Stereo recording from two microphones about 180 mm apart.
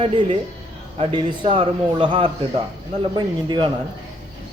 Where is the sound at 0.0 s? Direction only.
25° right (ahead or behind).